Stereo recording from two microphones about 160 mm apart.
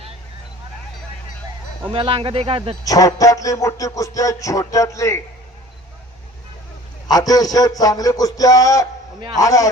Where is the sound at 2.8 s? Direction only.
20° left (ahead or behind).